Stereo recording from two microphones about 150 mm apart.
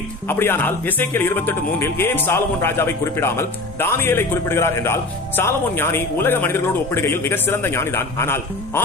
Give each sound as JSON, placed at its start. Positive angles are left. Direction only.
{"t": 0.3, "sound": "a man's voice", "side_deg": 15}